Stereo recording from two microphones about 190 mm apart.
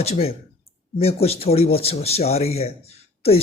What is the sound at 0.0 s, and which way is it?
Speech, 30° left (ahead or behind).